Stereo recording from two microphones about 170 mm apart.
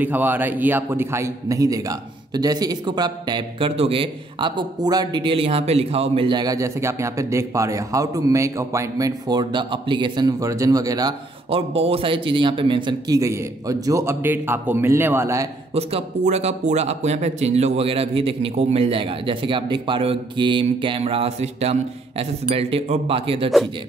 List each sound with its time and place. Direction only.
0.0 s a man's voice: 10° right (ahead or behind)
11.5 s a man's voice: 35° right (ahead or behind); by 15.4 s 15° right (ahead or behind)
15.7 s speech: 40° right (ahead or behind)